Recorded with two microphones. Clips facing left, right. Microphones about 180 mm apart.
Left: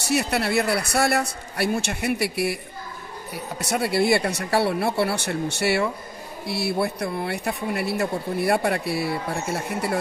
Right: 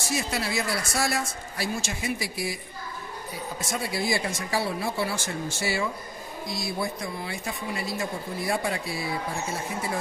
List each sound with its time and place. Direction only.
0.0 s speech: 65° left (ahead or behind)